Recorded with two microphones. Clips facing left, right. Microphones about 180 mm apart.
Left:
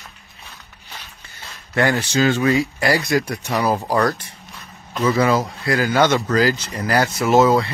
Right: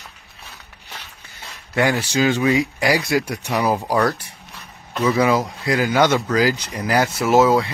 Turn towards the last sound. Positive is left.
turn(degrees=-5)  # may be behind; listen again after turning